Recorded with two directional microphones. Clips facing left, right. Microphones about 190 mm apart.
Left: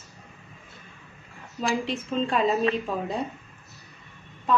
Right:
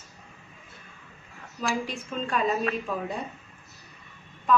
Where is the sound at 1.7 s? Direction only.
30° left (ahead or behind).